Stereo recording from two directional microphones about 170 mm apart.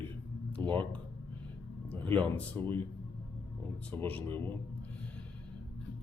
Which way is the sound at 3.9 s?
10° left (ahead or behind).